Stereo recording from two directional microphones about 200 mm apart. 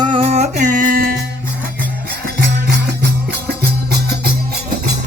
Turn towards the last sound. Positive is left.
turn(degrees=-55)  # may be behind; listen again after turning